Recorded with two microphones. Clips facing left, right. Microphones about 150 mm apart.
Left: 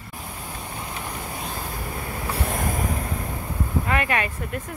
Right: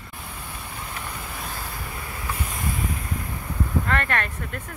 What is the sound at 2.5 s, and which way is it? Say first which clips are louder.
Boat: left 4 dB; 45° left (ahead or behind).